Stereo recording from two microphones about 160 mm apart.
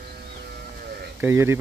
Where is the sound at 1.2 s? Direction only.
15° right (ahead or behind).